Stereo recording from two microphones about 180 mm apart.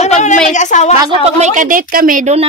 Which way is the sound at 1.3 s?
45° right (ahead or behind).